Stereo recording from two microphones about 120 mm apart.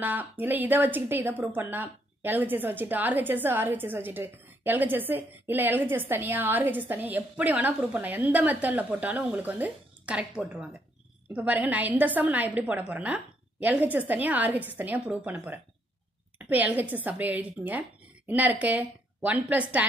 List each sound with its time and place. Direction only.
0.0 s a woman's voice: 15° right (ahead or behind)